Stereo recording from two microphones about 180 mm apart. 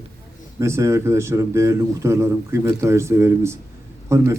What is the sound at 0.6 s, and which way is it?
A man's voice, 15° right (ahead or behind).